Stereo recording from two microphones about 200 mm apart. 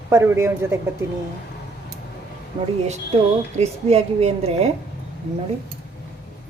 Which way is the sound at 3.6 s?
30° right (ahead or behind).